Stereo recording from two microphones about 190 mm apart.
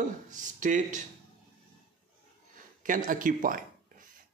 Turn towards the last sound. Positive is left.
turn(degrees=-45)  # may be behind; listen again after turning